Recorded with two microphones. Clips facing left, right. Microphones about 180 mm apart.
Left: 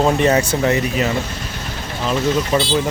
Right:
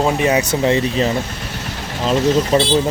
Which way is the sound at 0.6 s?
30° right (ahead or behind).